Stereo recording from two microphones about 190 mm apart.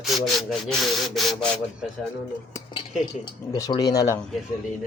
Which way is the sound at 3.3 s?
20° left (ahead or behind).